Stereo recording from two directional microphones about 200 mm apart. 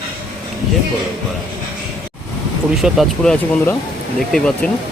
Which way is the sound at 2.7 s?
Centre (ahead or behind).